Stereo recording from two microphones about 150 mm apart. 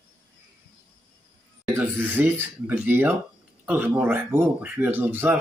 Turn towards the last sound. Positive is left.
turn(degrees=-15)  # may be behind; listen again after turning